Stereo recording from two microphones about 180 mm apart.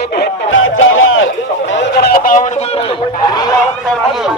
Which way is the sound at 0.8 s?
90° left.